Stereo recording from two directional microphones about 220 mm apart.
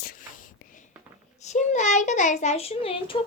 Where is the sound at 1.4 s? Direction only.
30° left (ahead or behind).